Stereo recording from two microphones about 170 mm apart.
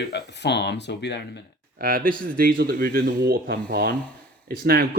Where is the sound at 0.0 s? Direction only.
85° left.